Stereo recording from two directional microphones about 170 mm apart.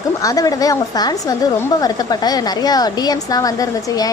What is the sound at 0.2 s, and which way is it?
A woman's voice, 20° left (ahead or behind).